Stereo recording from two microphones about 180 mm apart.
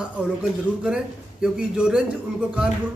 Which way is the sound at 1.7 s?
5° right (ahead or behind).